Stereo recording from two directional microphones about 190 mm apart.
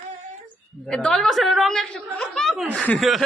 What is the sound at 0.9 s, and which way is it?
A woman's voice, 5° left (ahead or behind).